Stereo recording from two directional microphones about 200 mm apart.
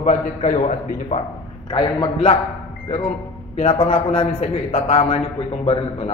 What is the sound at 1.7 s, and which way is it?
Speech, 25° left (ahead or behind).